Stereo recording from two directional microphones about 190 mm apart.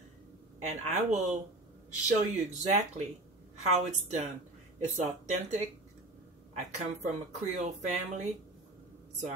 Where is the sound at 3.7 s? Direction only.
35° right (ahead or behind).